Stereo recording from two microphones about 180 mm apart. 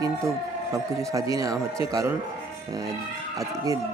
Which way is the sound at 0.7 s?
20° right (ahead or behind).